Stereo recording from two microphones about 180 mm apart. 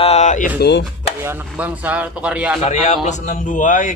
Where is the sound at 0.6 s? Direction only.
70° left (ahead or behind).